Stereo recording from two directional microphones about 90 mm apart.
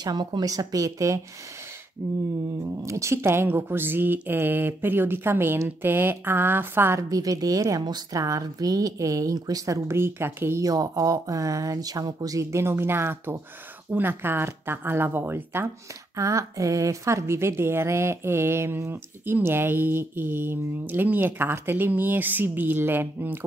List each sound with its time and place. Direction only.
0.0 s a woman's voice: 50° right (ahead or behind); by 7.0 s 25° right (ahead or behind)
7.0 s a woman's voice: 40° right (ahead or behind); by 10.6 s 25° right (ahead or behind)
10.6 s a woman's voice: 40° right (ahead or behind); by 15.7 s 25° right (ahead or behind)
16.2 s speech: 35° right (ahead or behind)